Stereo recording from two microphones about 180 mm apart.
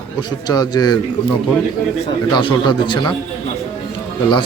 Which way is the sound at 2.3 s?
25° left (ahead or behind).